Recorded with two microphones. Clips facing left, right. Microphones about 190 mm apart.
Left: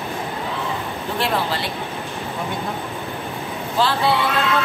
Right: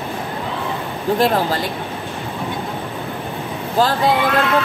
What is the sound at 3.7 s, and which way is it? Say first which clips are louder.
Speech: right 3 dB; 45° right (ahead or behind).